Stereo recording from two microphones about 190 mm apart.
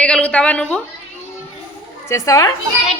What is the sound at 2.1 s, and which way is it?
Speech, 15° left (ahead or behind).